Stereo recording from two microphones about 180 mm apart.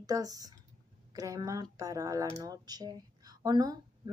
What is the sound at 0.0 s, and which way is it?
Speech, 20° right (ahead or behind).